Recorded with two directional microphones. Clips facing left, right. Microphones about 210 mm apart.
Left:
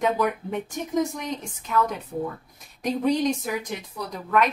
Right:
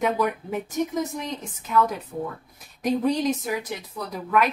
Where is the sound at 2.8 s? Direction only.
5° right (ahead or behind).